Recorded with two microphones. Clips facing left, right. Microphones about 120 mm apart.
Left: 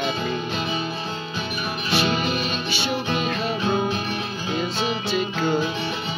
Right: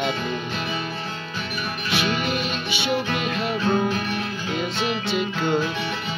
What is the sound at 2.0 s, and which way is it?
Music, 25° left (ahead or behind).